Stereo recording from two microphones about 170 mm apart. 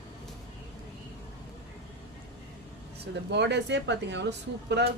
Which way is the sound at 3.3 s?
90° right.